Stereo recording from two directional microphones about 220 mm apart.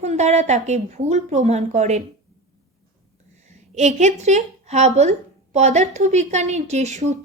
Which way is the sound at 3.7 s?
30° right (ahead or behind).